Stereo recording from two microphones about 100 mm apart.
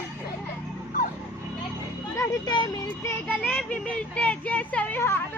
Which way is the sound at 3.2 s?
15° left (ahead or behind).